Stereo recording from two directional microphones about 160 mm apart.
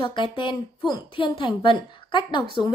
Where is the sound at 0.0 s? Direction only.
30° left (ahead or behind).